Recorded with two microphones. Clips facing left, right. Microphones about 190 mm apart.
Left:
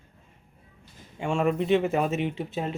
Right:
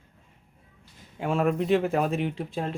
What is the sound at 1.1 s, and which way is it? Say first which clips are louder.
Speech: even; centre (ahead or behind).